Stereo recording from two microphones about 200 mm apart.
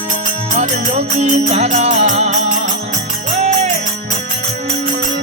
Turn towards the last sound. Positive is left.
turn(degrees=-35)  # may be behind; listen again after turning